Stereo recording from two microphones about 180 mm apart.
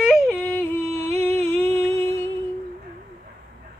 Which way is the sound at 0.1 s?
Centre (ahead or behind).